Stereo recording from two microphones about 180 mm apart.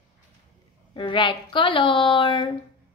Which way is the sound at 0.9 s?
25° left (ahead or behind).